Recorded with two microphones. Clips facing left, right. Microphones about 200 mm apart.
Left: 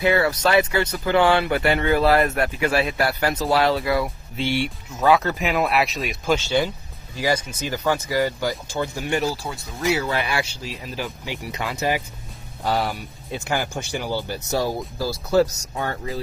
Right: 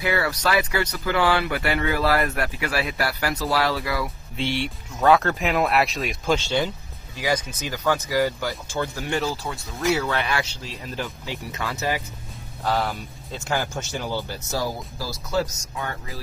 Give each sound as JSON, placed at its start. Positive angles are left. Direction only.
{"t": 0.0, "sound": "speech", "side_deg": 25}
{"t": 4.4, "sound": "speech", "side_deg": 5}
{"t": 15.7, "sound": "speech", "side_deg": 35}